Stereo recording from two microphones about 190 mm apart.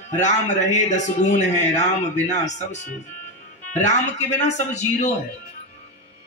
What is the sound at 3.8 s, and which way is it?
A man's voice, 40° left (ahead or behind).